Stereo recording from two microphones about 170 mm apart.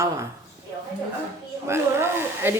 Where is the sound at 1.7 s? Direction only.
15° right (ahead or behind).